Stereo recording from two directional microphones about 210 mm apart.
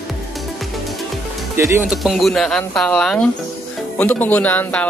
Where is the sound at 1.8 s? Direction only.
Centre (ahead or behind).